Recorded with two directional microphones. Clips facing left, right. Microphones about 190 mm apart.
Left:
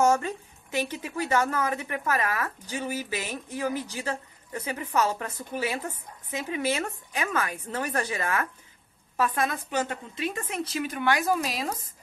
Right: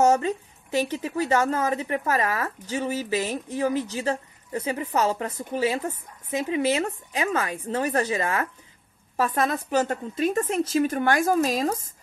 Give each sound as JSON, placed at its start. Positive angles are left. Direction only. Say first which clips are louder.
{"t": 0.1, "sound": "a woman's voice", "louder": "right 3 dB", "side_deg": -25}